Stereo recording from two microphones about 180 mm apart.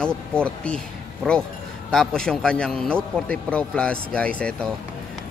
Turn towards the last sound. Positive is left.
turn(degrees=5)  # may be behind; listen again after turning